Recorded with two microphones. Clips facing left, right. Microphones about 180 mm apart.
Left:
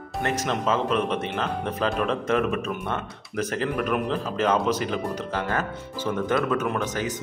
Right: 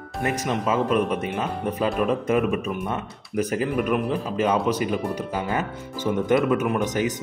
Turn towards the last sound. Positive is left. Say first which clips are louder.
# right 4 dB
turn(degrees=-15)  # may be behind; listen again after turning